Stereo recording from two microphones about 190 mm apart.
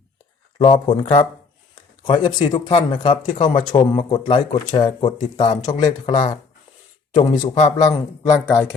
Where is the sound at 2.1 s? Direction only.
25° left (ahead or behind).